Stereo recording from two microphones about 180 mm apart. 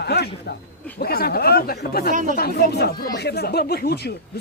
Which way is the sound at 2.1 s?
50° right (ahead or behind).